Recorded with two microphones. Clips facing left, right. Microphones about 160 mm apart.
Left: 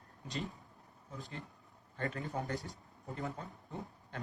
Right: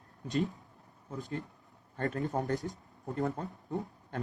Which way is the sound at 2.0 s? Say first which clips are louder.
Right 6 dB; 45° right (ahead or behind).